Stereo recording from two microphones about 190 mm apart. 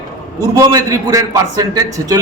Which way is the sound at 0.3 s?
20° right (ahead or behind).